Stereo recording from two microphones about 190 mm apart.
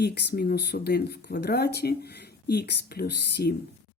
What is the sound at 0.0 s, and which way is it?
Speech, 60° left (ahead or behind).